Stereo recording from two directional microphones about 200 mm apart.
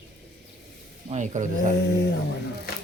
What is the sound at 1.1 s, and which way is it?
Speech, 35° right (ahead or behind).